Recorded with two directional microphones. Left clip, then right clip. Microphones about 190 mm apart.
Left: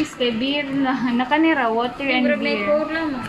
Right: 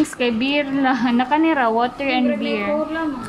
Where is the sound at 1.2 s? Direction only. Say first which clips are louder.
Left 1 dB; 10° right (ahead or behind).